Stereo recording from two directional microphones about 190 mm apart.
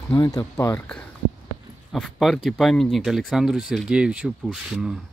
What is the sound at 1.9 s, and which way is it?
Speech, centre (ahead or behind).